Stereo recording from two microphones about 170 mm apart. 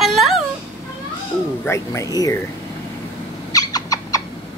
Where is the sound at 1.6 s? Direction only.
15° left (ahead or behind).